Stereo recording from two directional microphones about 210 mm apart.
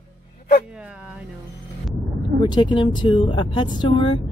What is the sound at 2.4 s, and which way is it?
Speech, 20° left (ahead or behind).